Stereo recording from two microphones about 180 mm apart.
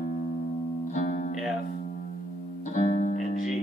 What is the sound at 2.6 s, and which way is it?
Music, 40° left (ahead or behind).